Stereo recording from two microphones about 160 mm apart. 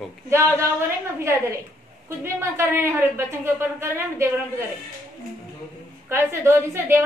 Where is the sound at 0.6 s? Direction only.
15° right (ahead or behind).